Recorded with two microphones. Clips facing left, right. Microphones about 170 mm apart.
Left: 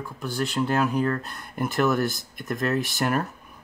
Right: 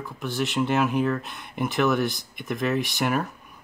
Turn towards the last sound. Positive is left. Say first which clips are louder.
# even
turn(degrees=0)  # may be behind; listen again after turning